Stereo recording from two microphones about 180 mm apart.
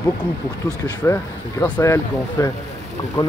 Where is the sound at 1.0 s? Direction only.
15° left (ahead or behind).